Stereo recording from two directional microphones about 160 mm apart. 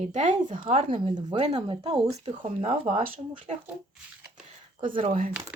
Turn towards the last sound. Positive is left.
turn(degrees=-55)  # may be behind; listen again after turning